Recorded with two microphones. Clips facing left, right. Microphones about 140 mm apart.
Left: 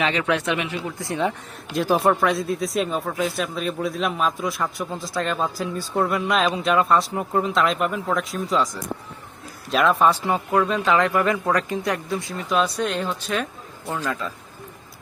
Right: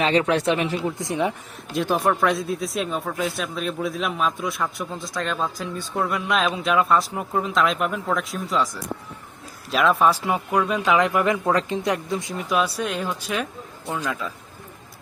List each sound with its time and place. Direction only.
0.0 s speech: 35° right (ahead or behind)
0.9 s speech: 20° right (ahead or behind)
1.7 s speech: centre (ahead or behind)